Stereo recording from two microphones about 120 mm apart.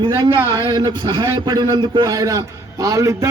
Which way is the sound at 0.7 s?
35° right (ahead or behind).